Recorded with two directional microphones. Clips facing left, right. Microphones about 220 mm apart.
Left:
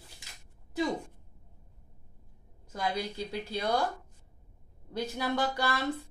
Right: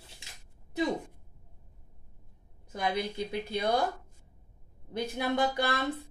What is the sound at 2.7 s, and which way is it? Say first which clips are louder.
Speech: right 2 dB; 20° right (ahead or behind).